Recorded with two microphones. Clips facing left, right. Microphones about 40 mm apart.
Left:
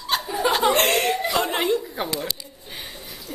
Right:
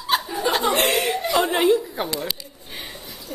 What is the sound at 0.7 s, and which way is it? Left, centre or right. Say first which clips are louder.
Chuckle: even; centre.